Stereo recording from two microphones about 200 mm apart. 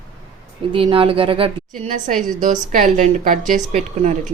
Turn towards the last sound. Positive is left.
turn(degrees=-35)  # may be behind; listen again after turning